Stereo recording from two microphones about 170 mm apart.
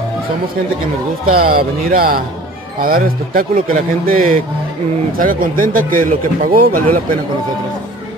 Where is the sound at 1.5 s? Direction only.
60° right (ahead or behind).